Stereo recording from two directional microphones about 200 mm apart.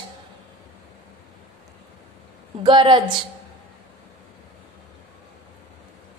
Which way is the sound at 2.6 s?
25° right (ahead or behind).